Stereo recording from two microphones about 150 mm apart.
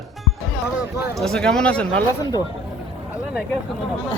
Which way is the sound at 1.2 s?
5° left (ahead or behind).